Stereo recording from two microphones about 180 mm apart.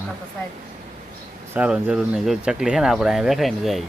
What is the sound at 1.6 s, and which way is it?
Speech, 5° right (ahead or behind).